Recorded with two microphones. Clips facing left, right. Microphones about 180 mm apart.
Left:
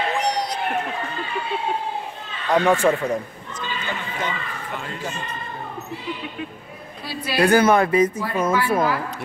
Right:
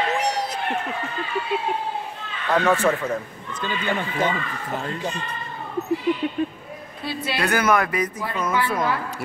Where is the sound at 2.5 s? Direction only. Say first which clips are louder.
Left 2 dB; 15° left (ahead or behind).